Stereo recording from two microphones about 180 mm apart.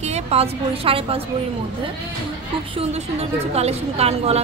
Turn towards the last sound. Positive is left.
turn(degrees=-35)  # may be behind; listen again after turning